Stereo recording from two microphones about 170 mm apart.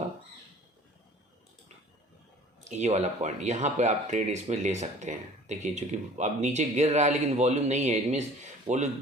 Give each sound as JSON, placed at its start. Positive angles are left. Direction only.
{"t": 2.6, "sound": "speech", "side_deg": -45}